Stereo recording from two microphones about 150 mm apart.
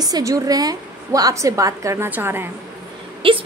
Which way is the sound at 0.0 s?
25° right (ahead or behind).